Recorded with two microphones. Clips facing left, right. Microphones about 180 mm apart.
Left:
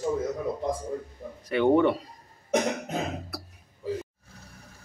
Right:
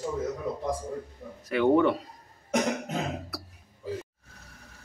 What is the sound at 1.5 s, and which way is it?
Speech, centre (ahead or behind).